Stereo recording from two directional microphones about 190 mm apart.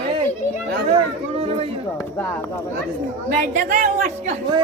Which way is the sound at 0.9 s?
30° right (ahead or behind).